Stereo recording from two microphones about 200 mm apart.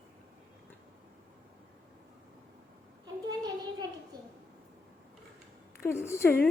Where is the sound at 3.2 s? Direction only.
20° right (ahead or behind).